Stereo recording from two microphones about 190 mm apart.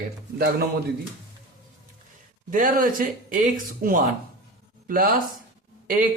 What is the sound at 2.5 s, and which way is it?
Speech, 45° right (ahead or behind).